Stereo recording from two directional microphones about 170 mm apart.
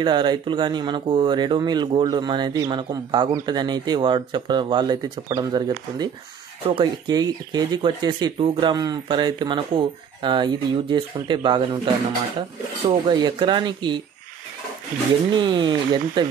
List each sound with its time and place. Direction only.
0.0 s speech: 25° right (ahead or behind)
15.3 s speech: 25° right (ahead or behind)